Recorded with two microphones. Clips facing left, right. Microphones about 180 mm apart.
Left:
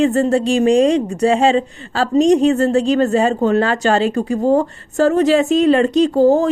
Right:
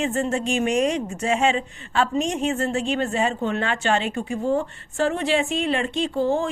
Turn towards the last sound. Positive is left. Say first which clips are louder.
# left 10 dB
turn(degrees=40)  # may be behind; listen again after turning